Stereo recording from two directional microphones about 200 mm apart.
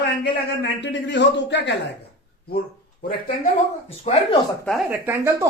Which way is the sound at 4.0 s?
30° left (ahead or behind).